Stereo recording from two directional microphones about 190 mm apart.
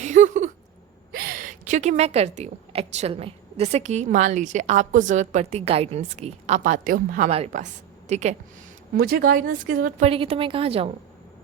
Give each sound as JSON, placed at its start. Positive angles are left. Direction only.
{"t": 0.0, "sound": "a sound", "side_deg": -40}
{"t": 1.1, "sound": "speech", "side_deg": -50}
{"t": 7.3, "sound": "a woman's voice", "side_deg": -35}
{"t": 9.0, "sound": "a woman's voice", "side_deg": -50}
{"t": 10.1, "sound": "a woman's voice", "side_deg": -30}